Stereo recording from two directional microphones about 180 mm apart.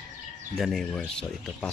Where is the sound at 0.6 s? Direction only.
Centre (ahead or behind).